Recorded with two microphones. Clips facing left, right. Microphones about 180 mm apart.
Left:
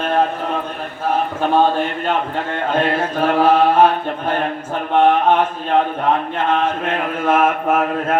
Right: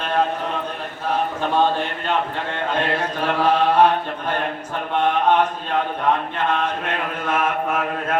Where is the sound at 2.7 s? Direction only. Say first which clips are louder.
Left 6 dB; 50° left (ahead or behind).